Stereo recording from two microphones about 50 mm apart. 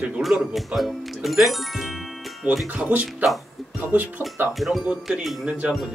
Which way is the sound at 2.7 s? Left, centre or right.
Right.